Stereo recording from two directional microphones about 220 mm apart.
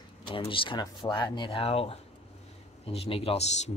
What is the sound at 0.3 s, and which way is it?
A man's voice, 25° left (ahead or behind).